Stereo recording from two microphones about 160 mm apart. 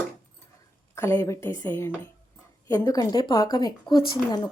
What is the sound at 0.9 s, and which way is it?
A woman's voice, 15° left (ahead or behind).